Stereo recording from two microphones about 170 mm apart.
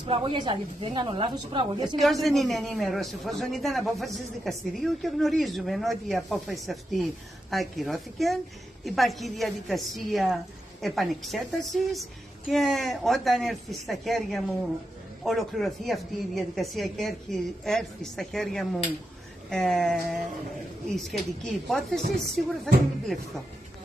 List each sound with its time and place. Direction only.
0.0 s a woman's voice: 30° right (ahead or behind)
2.0 s a woman's voice: centre (ahead or behind)